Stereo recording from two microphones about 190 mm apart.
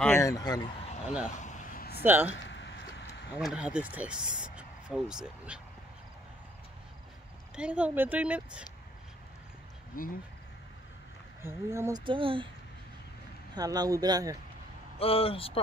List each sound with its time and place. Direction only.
0.0 s speech: 15° left (ahead or behind)
1.4 s a sound: 40° left (ahead or behind)
2.0 s speech: 10° right (ahead or behind)
2.3 s a sound: 70° left (ahead or behind)
3.3 s speech: 5° right (ahead or behind)
7.5 s speech: 5° right (ahead or behind)
9.9 s speech: 50° left (ahead or behind)
11.4 s speech: 15° right (ahead or behind)
12.0 s speech: 25° right (ahead or behind)
13.6 s speech: 20° right (ahead or behind)
15.0 s a man's voice: 30° left (ahead or behind)